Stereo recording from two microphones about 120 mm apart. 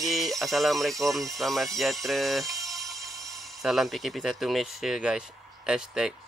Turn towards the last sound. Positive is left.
turn(degrees=-5)  # may be behind; listen again after turning